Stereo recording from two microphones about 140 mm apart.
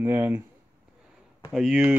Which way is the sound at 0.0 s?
25° right (ahead or behind).